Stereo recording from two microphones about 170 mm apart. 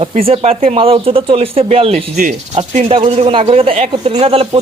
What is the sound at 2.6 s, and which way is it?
Speech, 35° right (ahead or behind).